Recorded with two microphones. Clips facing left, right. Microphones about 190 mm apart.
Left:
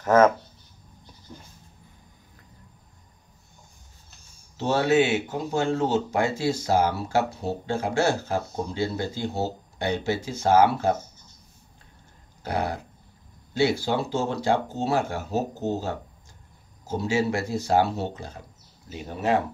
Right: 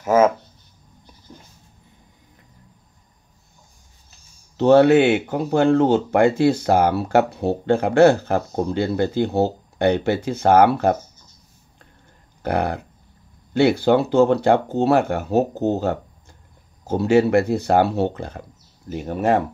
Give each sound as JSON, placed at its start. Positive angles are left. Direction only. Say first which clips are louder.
{"t": 0.0, "sound": "speech", "louder": "right 2 dB", "side_deg": -10}
{"t": 4.6, "sound": "speech", "louder": "right 8 dB", "side_deg": -60}
{"t": 12.4, "sound": "speech", "louder": "right 6 dB", "side_deg": -60}